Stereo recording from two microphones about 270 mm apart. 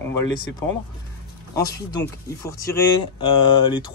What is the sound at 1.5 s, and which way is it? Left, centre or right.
Speech, centre.